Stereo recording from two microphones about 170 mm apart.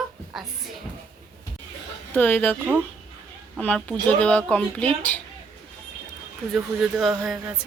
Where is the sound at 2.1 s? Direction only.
10° left (ahead or behind).